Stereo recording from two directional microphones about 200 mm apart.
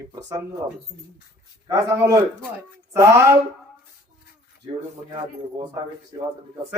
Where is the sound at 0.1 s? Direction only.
15° right (ahead or behind).